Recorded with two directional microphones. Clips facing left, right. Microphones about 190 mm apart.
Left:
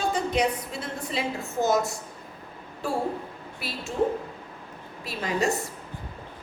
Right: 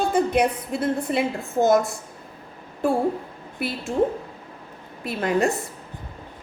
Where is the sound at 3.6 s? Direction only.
55° right (ahead or behind).